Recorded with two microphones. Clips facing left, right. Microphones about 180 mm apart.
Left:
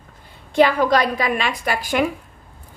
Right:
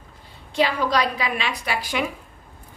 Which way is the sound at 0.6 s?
50° left (ahead or behind).